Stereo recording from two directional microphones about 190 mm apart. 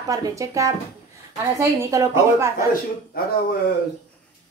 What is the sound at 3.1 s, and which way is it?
Speech, 50° left (ahead or behind).